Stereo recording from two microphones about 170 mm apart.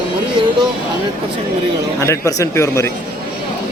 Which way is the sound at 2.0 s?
20° left (ahead or behind).